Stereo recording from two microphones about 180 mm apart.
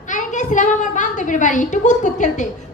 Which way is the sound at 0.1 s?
45° left (ahead or behind).